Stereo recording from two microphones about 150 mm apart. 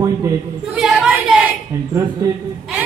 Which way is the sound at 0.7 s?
5° right (ahead or behind).